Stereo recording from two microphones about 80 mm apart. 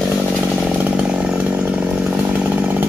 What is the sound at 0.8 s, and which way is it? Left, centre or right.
Chainsaw, centre.